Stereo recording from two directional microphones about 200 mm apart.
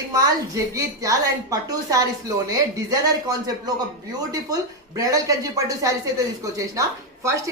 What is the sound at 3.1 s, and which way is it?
Speech, 20° right (ahead or behind).